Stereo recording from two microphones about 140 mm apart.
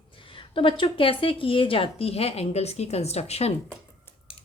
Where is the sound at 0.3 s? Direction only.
40° left (ahead or behind).